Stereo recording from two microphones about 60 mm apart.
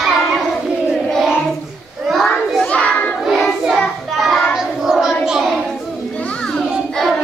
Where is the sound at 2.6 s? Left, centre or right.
Centre.